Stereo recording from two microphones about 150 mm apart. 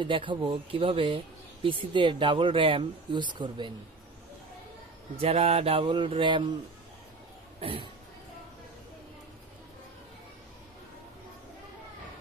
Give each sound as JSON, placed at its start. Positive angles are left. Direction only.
{"t": 0.0, "sound": "speech", "side_deg": -35}
{"t": 5.2, "sound": "speech", "side_deg": -45}
{"t": 7.6, "sound": "speech", "side_deg": -40}